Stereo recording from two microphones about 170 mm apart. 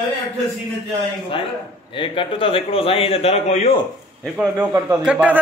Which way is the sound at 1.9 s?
30° left (ahead or behind).